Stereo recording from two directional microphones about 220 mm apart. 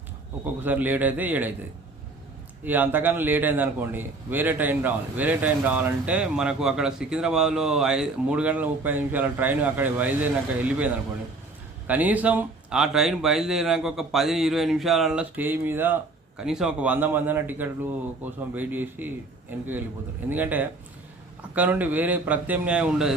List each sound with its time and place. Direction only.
0.4 s a man's voice: 10° right (ahead or behind)
2.6 s a man's voice: 10° right (ahead or behind)